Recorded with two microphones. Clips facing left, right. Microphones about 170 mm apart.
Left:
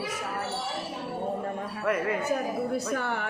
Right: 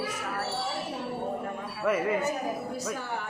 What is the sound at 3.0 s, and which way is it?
Speech, 65° left (ahead or behind).